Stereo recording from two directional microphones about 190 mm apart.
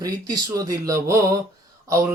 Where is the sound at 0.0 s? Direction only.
20° right (ahead or behind).